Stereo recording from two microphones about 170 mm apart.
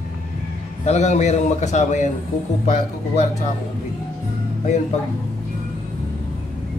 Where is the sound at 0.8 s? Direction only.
40° left (ahead or behind).